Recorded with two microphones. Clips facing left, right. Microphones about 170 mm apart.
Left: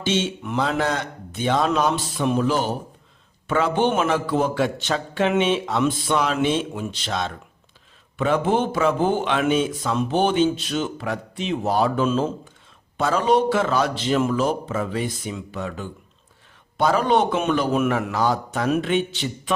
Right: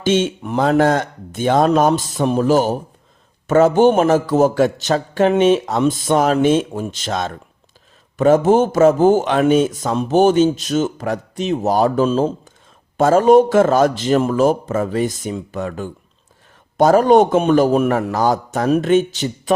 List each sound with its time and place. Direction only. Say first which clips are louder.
0.0 s speech: right 6 dB; 50° right (ahead or behind)
13.0 s speech: right 8 dB; 45° right (ahead or behind)